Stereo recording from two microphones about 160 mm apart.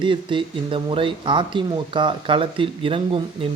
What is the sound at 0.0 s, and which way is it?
Speech, 30° right (ahead or behind).